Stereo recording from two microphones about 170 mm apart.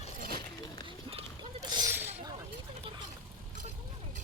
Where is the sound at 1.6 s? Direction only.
25° right (ahead or behind).